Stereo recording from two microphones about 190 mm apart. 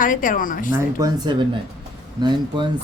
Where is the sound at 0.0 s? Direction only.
45° left (ahead or behind).